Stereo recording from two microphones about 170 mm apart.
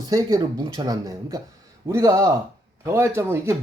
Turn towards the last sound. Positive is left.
turn(degrees=-15)  # may be behind; listen again after turning